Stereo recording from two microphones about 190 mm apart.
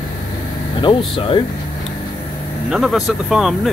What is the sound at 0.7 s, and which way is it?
Speech, 25° left (ahead or behind).